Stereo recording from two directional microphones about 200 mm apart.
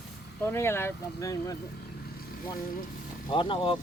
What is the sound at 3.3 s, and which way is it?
Speech, 25° left (ahead or behind).